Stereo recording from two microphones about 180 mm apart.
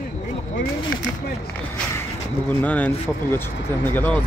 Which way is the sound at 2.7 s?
10° left (ahead or behind).